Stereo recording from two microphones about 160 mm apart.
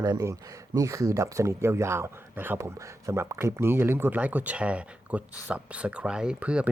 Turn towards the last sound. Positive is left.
turn(degrees=-10)  # may be behind; listen again after turning